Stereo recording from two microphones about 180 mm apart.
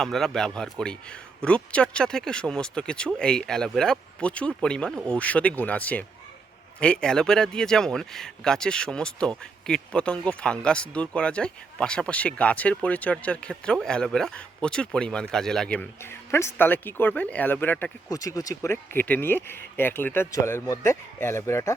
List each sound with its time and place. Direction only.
0.0 s speech: centre (ahead or behind)